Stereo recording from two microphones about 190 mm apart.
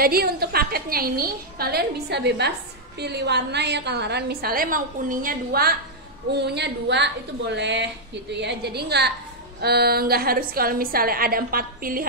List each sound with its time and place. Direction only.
0.0 s a woman's voice: 55° right (ahead or behind)